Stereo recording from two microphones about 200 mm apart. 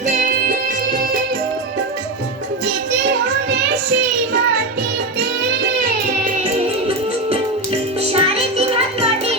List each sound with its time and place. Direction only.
6.4 s music: 30° right (ahead or behind)